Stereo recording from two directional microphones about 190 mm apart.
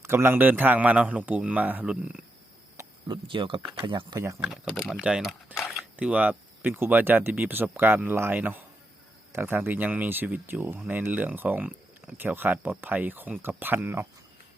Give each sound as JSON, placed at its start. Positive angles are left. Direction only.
{"t": 0.0, "sound": "speech", "side_deg": -15}
{"t": 2.7, "sound": "speech", "side_deg": -25}
{"t": 4.7, "sound": "speech", "side_deg": 0}